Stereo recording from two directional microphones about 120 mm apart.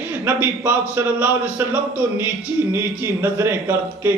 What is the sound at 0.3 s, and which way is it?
A man's voice, 15° right (ahead or behind).